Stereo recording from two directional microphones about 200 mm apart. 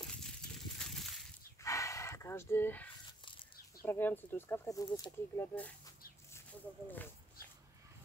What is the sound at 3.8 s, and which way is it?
Speech, 10° left (ahead or behind).